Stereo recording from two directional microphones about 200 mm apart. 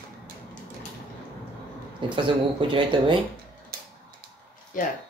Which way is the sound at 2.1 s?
25° right (ahead or behind).